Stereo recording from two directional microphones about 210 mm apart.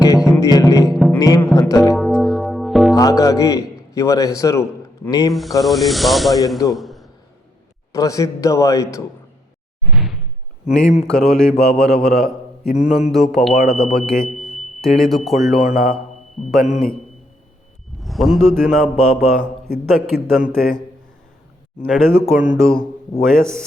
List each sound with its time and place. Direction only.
0.3 s a man's voice: 15° left (ahead or behind)
0.9 s a man's voice: centre (ahead or behind)
1.1 s a man's voice: 15° left (ahead or behind)
1.9 s music: 5° right (ahead or behind)
2.9 s a man's voice: 15° left (ahead or behind)
5.3 s a man's voice: centre (ahead or behind)
6.7 s a sound: centre (ahead or behind)
7.9 s a man's voice: 15° left (ahead or behind)
9.9 s door: centre (ahead or behind)
10.7 s a man's voice: centre (ahead or behind)
15.7 s speech: 45° left (ahead or behind)
16.5 s a man's voice: centre (ahead or behind)
18.0 s a man's voice: centre (ahead or behind)
22.1 s speech: 10° right (ahead or behind)